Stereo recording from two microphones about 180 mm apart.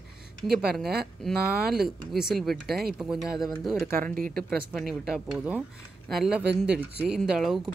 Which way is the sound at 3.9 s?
50° right (ahead or behind).